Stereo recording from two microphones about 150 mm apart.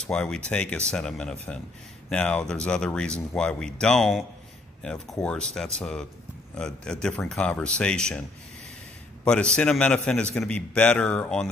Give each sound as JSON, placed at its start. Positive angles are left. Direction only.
{"t": 0.0, "sound": "speech", "side_deg": 5}
{"t": 5.8, "sound": "a man's voice", "side_deg": 5}